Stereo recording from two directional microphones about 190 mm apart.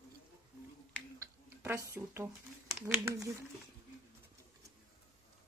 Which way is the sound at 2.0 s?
15° right (ahead or behind).